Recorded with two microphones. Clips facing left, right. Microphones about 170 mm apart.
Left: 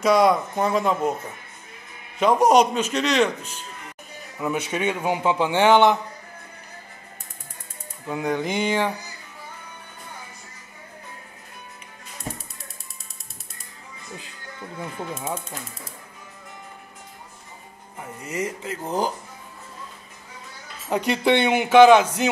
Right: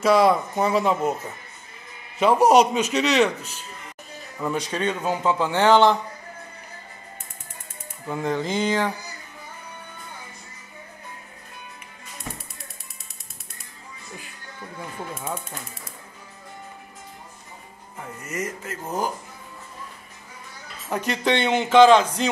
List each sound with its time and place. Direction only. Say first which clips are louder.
0.0 s speech: even; 5° right (ahead or behind)
2.1 s speech: right 1 dB; 5° right (ahead or behind)
4.4 s a man's voice: left 1 dB; 5° left (ahead or behind)
8.4 s a sound: right 1 dB; 20° left (ahead or behind)
15.1 s a sound: even; 25° left (ahead or behind)
17.9 s a man's voice: left 2 dB; 10° left (ahead or behind)
20.9 s a man's voice: left 3 dB; 15° left (ahead or behind)